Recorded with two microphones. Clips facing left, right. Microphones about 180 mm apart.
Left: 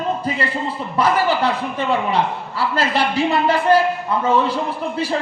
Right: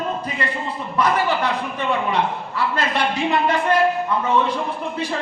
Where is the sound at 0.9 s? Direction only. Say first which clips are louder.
Left 2 dB; 30° left (ahead or behind).